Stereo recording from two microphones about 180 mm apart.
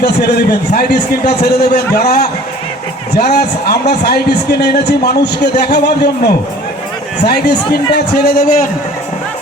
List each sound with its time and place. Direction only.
0.0 s a man's voice: 65° left (ahead or behind)